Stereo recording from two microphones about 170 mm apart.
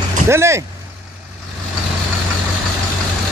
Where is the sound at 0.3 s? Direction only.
15° right (ahead or behind).